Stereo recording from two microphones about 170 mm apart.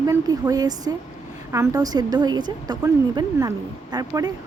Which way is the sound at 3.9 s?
20° right (ahead or behind).